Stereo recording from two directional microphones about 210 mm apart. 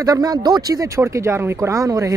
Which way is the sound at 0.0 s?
15° right (ahead or behind).